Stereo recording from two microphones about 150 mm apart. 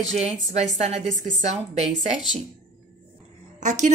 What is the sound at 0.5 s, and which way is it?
Speech, 50° right (ahead or behind).